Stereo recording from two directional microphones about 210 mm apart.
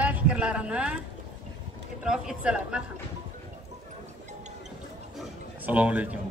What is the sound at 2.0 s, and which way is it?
Speech, 5° right (ahead or behind).